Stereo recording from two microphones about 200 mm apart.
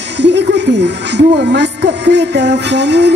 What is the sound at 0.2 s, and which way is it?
Speech, 60° right (ahead or behind).